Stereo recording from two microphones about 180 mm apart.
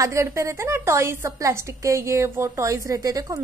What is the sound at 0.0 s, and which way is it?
A woman's voice, 15° right (ahead or behind).